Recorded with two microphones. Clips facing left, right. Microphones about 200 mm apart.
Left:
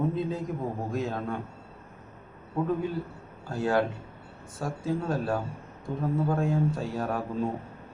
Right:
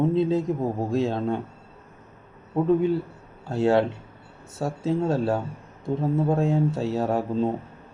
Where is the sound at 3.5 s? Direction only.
25° right (ahead or behind).